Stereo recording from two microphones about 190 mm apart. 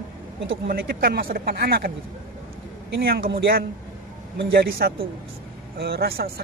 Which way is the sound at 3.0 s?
55° right (ahead or behind).